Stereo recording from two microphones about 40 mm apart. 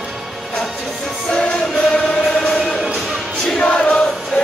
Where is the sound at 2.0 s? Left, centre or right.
Left.